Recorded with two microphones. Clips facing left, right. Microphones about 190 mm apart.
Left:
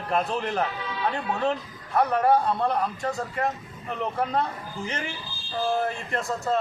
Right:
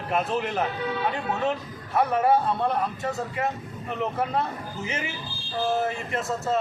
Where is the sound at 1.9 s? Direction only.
5° right (ahead or behind).